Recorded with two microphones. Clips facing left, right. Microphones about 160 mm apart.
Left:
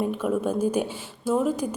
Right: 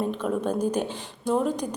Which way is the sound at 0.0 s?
10° left (ahead or behind).